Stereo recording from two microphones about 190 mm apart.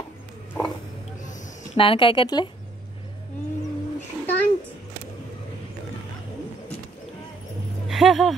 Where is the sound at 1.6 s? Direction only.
25° left (ahead or behind).